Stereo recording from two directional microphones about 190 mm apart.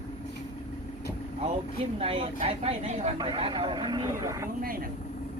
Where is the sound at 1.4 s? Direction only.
30° right (ahead or behind).